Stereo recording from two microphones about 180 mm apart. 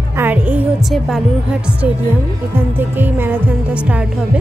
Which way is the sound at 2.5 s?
10° right (ahead or behind).